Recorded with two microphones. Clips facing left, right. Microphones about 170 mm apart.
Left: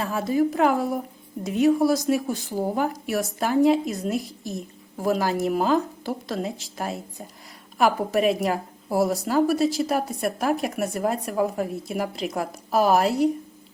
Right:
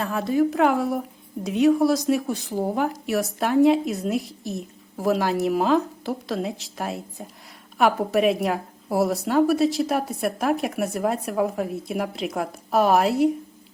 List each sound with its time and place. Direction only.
0.0 s speech: centre (ahead or behind)